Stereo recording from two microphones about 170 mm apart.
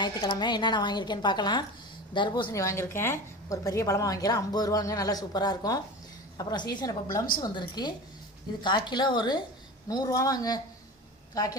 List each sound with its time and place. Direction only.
0.0 s a woman's voice: 25° left (ahead or behind)